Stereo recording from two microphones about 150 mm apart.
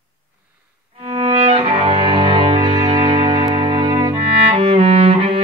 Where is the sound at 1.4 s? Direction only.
40° right (ahead or behind).